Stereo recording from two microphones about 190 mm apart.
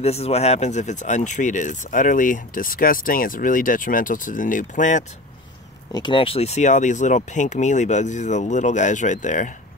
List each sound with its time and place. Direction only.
0.0 s speech: 30° left (ahead or behind)
5.9 s speech: 25° left (ahead or behind); by 9.5 s 40° left (ahead or behind)